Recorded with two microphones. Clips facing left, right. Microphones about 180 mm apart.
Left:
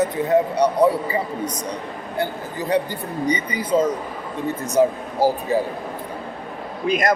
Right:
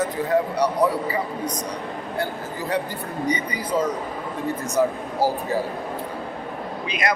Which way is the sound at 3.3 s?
20° left (ahead or behind).